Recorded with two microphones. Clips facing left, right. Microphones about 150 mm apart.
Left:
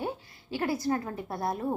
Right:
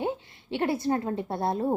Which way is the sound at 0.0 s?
25° right (ahead or behind).